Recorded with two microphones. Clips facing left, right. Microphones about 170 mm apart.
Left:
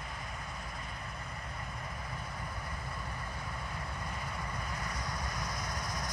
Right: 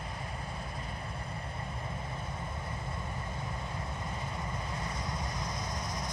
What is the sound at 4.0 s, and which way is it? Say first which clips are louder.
Vehicle: right 2 dB; 25° right (ahead or behind).